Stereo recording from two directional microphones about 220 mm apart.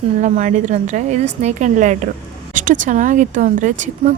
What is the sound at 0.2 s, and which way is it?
Speech, 35° right (ahead or behind).